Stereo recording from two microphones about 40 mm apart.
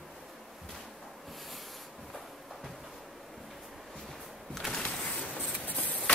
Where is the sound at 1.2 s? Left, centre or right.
Centre.